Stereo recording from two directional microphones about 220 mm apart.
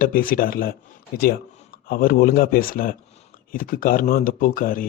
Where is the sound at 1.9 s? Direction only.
40° left (ahead or behind).